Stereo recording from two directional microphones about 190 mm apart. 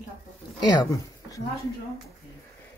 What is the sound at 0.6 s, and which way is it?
Speech, 20° left (ahead or behind).